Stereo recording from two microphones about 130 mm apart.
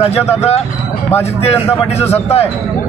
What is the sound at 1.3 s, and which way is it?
Speech, 50° left (ahead or behind).